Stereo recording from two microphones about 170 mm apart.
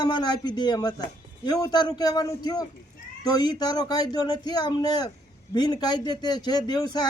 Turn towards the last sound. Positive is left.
turn(degrees=25)  # may be behind; listen again after turning